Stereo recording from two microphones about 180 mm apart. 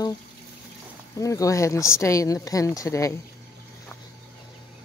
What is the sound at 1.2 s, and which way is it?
Speech, 20° left (ahead or behind).